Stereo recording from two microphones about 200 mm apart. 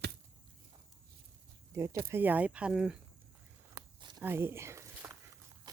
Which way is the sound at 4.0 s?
20° right (ahead or behind).